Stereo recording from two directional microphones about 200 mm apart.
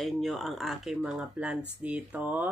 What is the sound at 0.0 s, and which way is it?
A woman's voice, centre (ahead or behind).